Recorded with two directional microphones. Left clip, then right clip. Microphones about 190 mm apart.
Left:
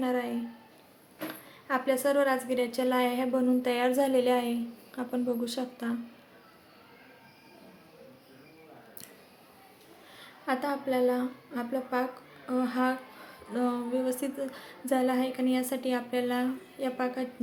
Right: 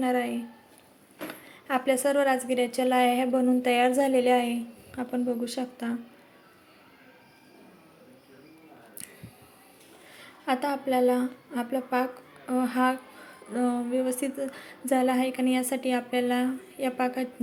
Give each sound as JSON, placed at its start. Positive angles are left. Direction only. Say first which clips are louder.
{"t": 0.0, "sound": "a woman's voice", "louder": "right 3 dB", "side_deg": -15}
{"t": 10.2, "sound": "a woman's voice", "louder": "right 3 dB", "side_deg": -20}